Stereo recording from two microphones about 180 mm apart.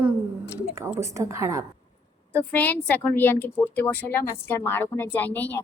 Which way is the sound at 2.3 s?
10° left (ahead or behind).